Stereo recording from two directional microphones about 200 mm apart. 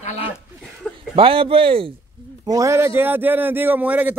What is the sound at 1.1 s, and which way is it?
Speech, 25° right (ahead or behind).